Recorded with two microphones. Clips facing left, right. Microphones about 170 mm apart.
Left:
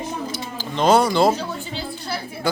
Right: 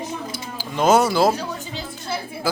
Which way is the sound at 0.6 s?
10° right (ahead or behind).